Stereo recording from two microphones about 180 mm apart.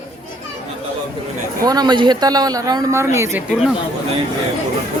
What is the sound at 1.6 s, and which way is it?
A man's voice, 20° right (ahead or behind).